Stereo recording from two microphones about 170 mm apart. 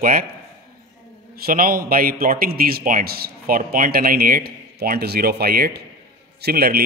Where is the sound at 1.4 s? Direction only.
55° right (ahead or behind).